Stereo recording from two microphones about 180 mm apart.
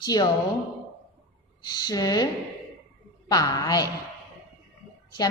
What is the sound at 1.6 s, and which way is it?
Speech, 20° left (ahead or behind).